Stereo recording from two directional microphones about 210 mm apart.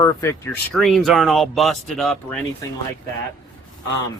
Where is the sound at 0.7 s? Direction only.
Centre (ahead or behind).